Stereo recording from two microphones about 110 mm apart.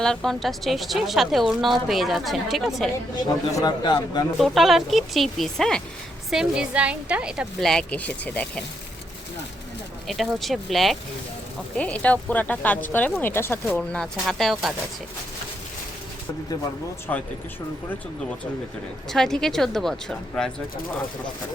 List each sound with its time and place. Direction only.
0.0 s a woman's voice: 5° left (ahead or behind)
3.2 s a man's voice: 35° left (ahead or behind)
4.4 s a woman's voice: centre (ahead or behind)
6.3 s a woman's voice: 10° right (ahead or behind)
7.6 s speech: 5° left (ahead or behind)
10.1 s a woman's voice: centre (ahead or behind)
11.8 s speech: 10° left (ahead or behind)
13.7 s a woman's voice: 5° left (ahead or behind)
17.1 s speech: 20° left (ahead or behind)
19.1 s a woman's voice: 5° left (ahead or behind)